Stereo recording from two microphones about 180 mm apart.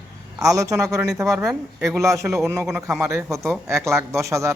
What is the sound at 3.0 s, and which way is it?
Speech, 15° right (ahead or behind).